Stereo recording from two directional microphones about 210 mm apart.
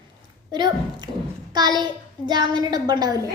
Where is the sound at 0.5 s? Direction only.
20° right (ahead or behind).